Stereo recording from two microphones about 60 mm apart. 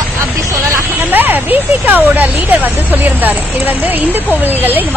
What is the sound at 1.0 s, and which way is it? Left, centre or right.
A woman's voice, right.